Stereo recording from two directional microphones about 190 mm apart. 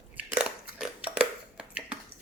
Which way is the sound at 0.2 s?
5° right (ahead or behind).